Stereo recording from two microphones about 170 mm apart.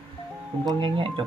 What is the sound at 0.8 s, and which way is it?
Speech, 30° right (ahead or behind).